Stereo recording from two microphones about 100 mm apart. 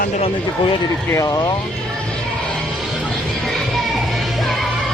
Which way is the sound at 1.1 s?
30° left (ahead or behind).